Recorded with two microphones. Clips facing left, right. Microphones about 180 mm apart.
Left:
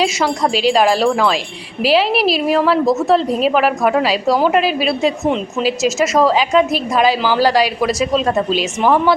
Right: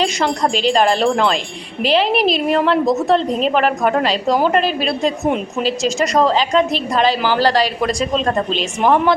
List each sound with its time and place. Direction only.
0.0 s a woman's voice: 5° left (ahead or behind)